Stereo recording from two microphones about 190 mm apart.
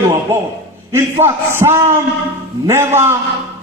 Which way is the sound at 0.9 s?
15° right (ahead or behind).